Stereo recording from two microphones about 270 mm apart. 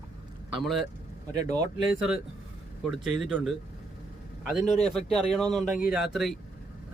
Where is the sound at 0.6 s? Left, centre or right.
Centre.